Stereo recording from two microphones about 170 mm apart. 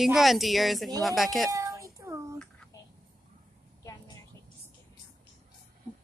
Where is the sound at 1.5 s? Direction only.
20° right (ahead or behind).